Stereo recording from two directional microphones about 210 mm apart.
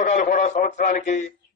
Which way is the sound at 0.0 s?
35° left (ahead or behind).